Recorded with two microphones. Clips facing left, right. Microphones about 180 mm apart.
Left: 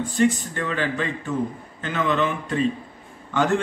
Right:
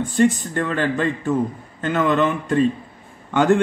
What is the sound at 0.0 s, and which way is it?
A man's voice, 50° right (ahead or behind).